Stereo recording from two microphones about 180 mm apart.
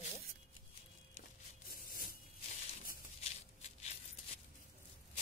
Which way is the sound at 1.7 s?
55° left (ahead or behind).